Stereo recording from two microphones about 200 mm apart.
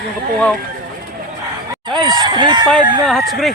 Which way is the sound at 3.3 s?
Centre (ahead or behind).